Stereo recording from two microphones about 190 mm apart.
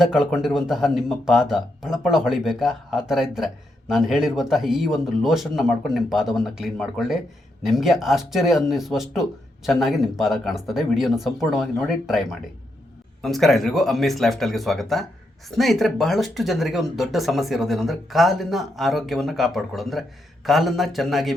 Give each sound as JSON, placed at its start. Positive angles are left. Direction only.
{"t": 0.0, "sound": "speech", "side_deg": 0}